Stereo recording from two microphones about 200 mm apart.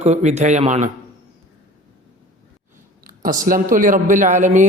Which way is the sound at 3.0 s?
45° right (ahead or behind).